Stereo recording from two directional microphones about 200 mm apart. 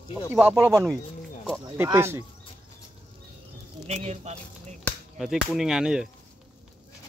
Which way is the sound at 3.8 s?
35° right (ahead or behind).